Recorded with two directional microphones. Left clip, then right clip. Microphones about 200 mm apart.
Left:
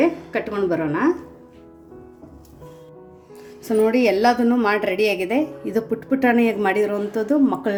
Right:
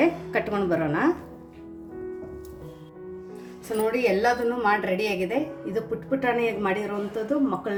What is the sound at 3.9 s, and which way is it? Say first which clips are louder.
A woman's voice: left 2 dB; 45° left (ahead or behind).